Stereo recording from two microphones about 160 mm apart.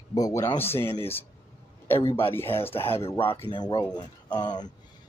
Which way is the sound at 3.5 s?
25° left (ahead or behind).